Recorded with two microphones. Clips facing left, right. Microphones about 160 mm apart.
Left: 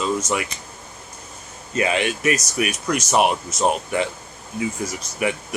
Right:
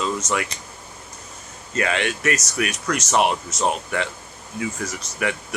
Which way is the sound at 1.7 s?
15° left (ahead or behind).